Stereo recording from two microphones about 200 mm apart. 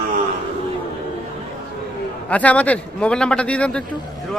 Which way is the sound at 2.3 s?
5° left (ahead or behind).